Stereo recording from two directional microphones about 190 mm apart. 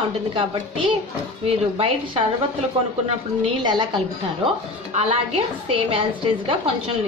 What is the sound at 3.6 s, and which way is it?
Speech, 25° right (ahead or behind).